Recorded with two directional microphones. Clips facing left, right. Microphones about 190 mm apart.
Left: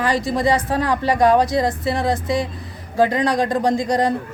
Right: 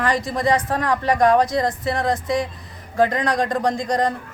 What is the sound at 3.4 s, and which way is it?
Speech, 5° left (ahead or behind).